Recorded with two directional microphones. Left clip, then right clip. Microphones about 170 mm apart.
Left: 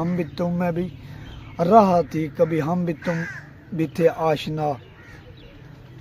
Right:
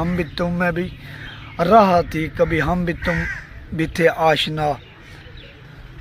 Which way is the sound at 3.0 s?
25° right (ahead or behind).